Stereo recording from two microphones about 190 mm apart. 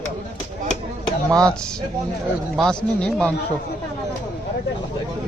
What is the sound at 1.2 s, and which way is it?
Speech, 20° right (ahead or behind).